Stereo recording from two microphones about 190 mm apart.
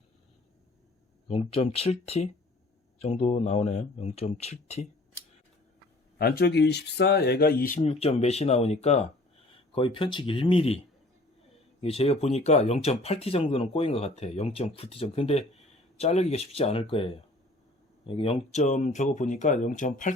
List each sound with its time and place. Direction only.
1.3 s speech: 30° left (ahead or behind)
6.1 s speech: 55° left (ahead or behind)
7.8 s speech: 35° left (ahead or behind)
11.8 s speech: 30° left (ahead or behind)